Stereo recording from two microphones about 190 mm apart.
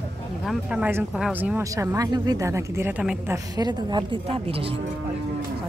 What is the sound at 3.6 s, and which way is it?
A woman's voice, 20° right (ahead or behind).